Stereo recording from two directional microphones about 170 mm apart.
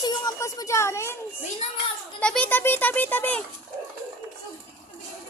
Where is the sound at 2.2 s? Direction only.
5° left (ahead or behind).